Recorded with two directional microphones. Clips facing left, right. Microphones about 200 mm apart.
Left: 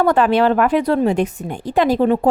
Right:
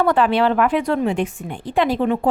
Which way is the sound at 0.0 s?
45° left (ahead or behind).